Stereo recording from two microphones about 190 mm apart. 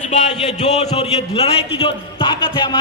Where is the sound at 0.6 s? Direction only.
35° left (ahead or behind).